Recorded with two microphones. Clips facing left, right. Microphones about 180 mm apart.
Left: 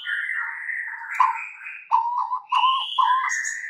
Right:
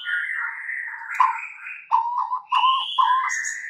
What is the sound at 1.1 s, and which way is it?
Frog, 5° left (ahead or behind).